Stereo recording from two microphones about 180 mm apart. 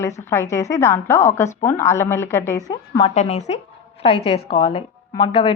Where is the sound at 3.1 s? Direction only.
40° left (ahead or behind).